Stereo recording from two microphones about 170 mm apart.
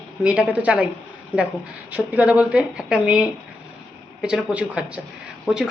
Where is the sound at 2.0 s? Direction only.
10° right (ahead or behind).